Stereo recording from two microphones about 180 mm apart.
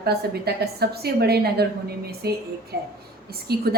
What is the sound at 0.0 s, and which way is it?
Speech, 60° right (ahead or behind).